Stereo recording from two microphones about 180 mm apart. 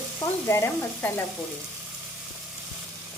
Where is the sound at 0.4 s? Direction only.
15° left (ahead or behind).